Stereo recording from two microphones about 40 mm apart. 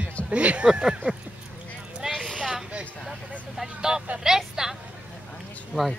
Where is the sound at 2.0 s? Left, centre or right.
Centre.